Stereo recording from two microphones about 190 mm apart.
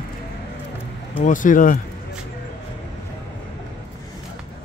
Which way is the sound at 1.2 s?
45° left (ahead or behind).